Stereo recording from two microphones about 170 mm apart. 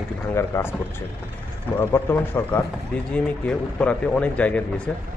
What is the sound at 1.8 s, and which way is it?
Speech, 15° left (ahead or behind).